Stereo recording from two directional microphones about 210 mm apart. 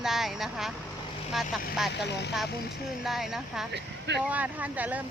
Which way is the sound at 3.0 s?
Centre (ahead or behind).